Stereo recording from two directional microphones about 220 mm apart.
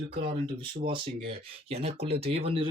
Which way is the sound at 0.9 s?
25° right (ahead or behind).